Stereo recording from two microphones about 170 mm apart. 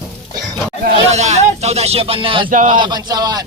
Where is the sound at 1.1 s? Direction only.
40° right (ahead or behind).